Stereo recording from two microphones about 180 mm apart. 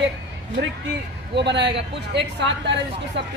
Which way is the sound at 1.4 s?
70° right (ahead or behind).